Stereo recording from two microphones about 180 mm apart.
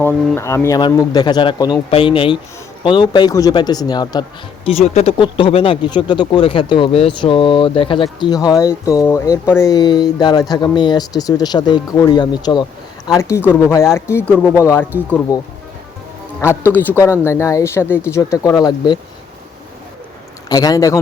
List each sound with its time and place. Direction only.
0.3 s speech: 15° left (ahead or behind)
16.4 s speech: 15° left (ahead or behind)
20.5 s speech: 20° left (ahead or behind)